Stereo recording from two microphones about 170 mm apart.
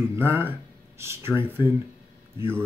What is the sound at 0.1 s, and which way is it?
Speech, 15° right (ahead or behind).